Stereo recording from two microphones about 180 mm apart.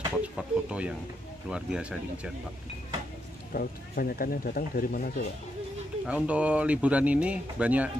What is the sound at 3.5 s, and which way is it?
Speech, 55° left (ahead or behind).